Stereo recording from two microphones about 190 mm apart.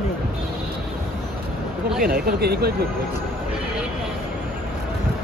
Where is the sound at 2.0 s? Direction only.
55° right (ahead or behind).